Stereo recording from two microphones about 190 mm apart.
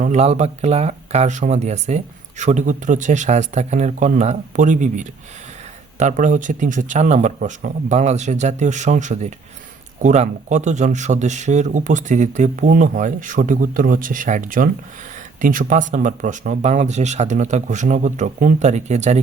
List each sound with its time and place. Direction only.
0.0 s a man's voice: 35° right (ahead or behind)